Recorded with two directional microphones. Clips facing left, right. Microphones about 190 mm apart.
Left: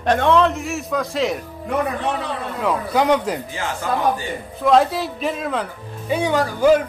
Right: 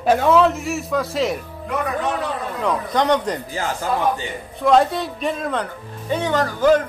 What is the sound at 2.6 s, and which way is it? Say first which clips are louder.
Speech: left 1 dB; 5° left (ahead or behind).